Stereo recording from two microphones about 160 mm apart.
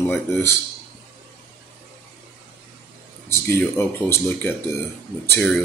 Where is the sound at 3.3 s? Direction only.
15° left (ahead or behind).